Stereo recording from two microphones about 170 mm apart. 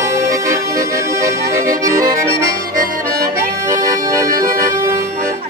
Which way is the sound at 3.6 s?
20° right (ahead or behind).